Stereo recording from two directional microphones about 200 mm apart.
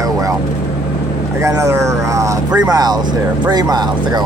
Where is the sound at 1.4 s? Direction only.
15° right (ahead or behind).